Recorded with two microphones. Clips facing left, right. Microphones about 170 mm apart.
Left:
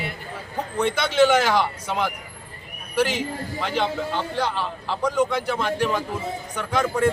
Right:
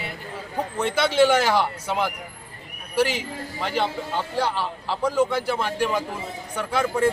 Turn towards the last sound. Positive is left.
turn(degrees=-5)  # may be behind; listen again after turning